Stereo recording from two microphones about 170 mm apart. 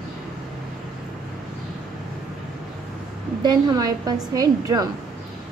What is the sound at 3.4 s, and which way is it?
A woman's voice, 25° right (ahead or behind).